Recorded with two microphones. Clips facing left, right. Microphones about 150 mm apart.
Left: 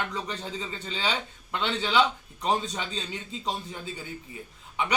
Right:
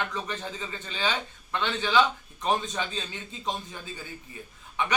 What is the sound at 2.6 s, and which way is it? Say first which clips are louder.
Speech: right 1 dB; 35° left (ahead or behind).